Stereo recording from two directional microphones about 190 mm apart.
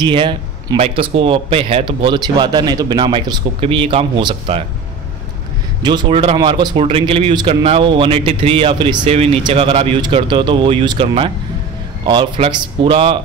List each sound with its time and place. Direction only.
0.0 s speech: 25° right (ahead or behind)
5.8 s speech: 25° right (ahead or behind)